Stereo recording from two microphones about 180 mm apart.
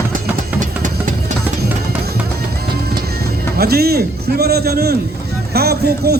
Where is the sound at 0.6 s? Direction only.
45° right (ahead or behind).